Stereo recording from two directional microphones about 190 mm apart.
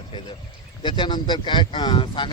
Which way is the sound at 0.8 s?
25° left (ahead or behind).